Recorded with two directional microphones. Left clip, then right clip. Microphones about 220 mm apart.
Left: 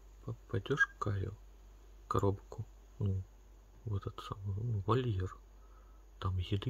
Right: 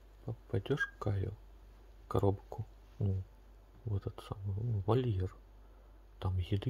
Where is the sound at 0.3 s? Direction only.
10° left (ahead or behind).